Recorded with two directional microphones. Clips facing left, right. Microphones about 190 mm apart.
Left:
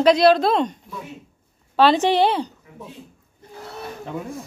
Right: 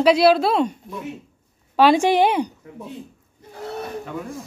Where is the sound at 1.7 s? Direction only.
10° right (ahead or behind).